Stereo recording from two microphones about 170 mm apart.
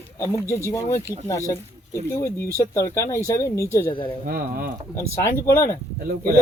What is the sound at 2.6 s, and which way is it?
Speech, 20° left (ahead or behind).